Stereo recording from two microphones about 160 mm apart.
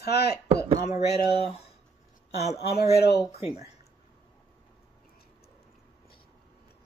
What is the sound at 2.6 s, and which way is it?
Speech, 80° left.